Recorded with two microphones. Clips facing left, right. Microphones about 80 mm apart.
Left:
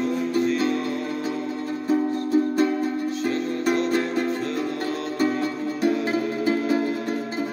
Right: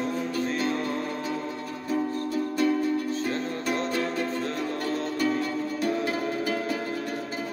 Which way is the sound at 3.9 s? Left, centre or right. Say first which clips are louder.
Left 5 dB; left.